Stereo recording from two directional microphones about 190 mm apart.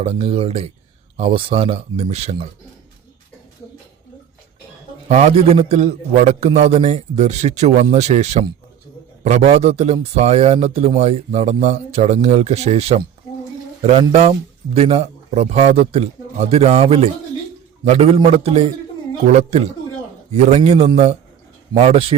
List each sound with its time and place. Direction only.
0.0 s speech: 30° right (ahead or behind)
5.0 s speech: 35° right (ahead or behind)
14.0 s speech: 30° right (ahead or behind)